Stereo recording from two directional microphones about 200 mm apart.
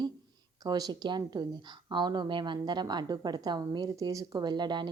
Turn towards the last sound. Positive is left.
turn(degrees=-20)  # may be behind; listen again after turning